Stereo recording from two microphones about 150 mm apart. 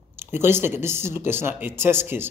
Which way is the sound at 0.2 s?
15° right (ahead or behind).